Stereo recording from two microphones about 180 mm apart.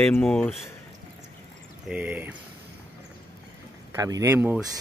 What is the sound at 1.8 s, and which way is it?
Speech, 10° right (ahead or behind).